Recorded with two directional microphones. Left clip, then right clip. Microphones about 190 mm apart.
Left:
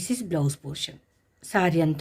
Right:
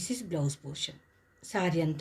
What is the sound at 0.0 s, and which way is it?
Speech, 40° left (ahead or behind).